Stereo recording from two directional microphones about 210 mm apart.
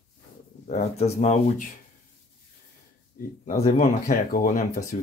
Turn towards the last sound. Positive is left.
turn(degrees=40)  # may be behind; listen again after turning